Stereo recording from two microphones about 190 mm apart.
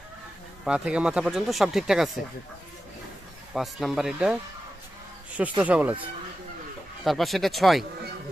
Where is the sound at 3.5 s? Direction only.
Centre (ahead or behind).